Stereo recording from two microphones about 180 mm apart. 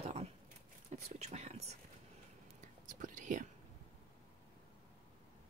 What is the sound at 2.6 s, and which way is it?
Whispering, 45° right (ahead or behind).